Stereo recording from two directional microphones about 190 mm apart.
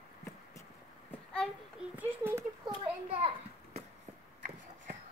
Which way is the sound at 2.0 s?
10° right (ahead or behind).